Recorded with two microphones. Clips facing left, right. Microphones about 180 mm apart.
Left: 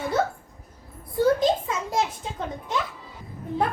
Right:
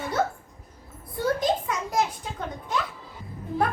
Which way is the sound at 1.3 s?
25° left (ahead or behind).